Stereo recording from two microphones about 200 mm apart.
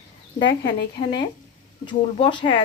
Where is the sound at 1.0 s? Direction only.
30° left (ahead or behind).